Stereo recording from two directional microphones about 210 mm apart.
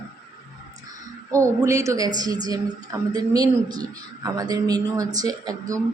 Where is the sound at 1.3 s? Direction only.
15° right (ahead or behind).